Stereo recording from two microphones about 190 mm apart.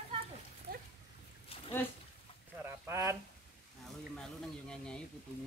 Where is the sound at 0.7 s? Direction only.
50° right (ahead or behind).